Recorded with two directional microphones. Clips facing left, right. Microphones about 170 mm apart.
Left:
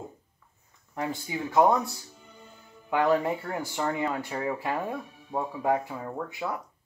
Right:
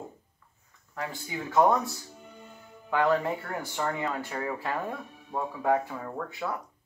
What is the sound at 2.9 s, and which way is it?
Speech, 20° left (ahead or behind).